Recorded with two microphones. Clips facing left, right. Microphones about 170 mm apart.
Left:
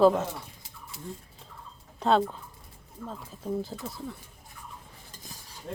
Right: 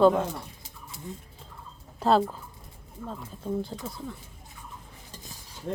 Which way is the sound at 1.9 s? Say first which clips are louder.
Right 1 dB; 5° right (ahead or behind).